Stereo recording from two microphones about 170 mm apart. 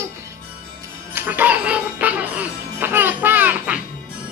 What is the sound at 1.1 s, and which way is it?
Speech, 10° right (ahead or behind).